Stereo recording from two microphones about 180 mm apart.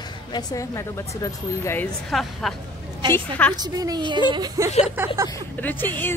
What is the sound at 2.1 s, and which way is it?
A woman's voice, centre (ahead or behind).